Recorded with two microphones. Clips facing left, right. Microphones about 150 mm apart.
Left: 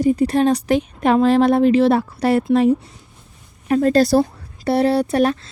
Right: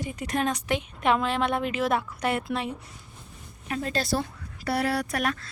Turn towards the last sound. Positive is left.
turn(degrees=30)  # may be behind; listen again after turning